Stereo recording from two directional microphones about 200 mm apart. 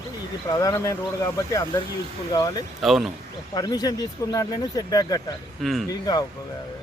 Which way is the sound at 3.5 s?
20° left (ahead or behind).